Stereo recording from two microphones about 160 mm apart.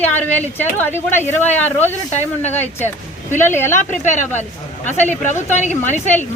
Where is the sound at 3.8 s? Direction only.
50° left (ahead or behind).